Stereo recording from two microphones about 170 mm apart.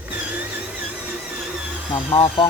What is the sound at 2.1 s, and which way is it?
Music, 30° left (ahead or behind).